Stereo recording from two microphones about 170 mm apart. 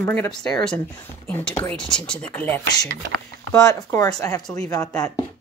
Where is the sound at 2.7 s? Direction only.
70° right (ahead or behind).